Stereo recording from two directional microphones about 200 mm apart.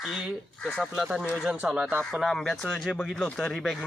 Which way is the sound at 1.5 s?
5° right (ahead or behind).